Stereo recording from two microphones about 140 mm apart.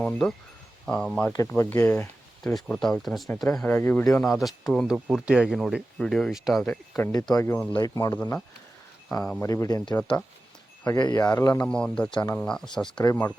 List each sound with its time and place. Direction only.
0.0 s speech: 10° left (ahead or behind)
2.5 s speech: centre (ahead or behind)
4.0 s speech: 5° left (ahead or behind)
7.1 s speech: 25° left (ahead or behind)
7.5 s speech: 10° left (ahead or behind)
7.8 s speech: 25° left (ahead or behind)
8.1 s speech: 15° left (ahead or behind)
9.0 s speech: 5° left (ahead or behind)
9.4 s speech: 20° left (ahead or behind)
9.9 s speech: 10° left (ahead or behind)
10.8 s speech: 25° left (ahead or behind)
11.6 s speech: 5° left (ahead or behind)